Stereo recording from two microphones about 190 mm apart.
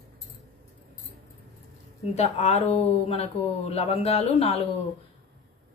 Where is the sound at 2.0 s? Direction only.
35° left (ahead or behind).